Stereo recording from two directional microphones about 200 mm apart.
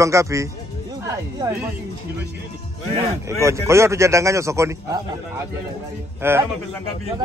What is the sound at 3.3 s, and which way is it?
A man's voice, 15° right (ahead or behind).